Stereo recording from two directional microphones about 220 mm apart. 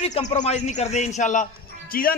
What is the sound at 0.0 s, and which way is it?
A man's voice, 30° left (ahead or behind).